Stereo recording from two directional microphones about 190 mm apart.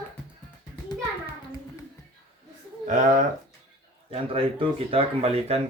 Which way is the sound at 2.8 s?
40° right (ahead or behind).